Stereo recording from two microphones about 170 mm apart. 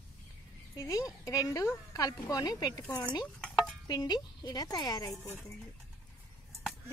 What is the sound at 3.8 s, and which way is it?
A woman's voice, 20° left (ahead or behind).